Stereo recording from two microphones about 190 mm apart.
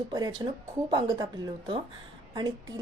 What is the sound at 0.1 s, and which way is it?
A woman's voice, 20° right (ahead or behind).